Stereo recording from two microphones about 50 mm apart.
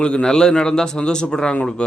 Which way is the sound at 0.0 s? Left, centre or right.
Centre.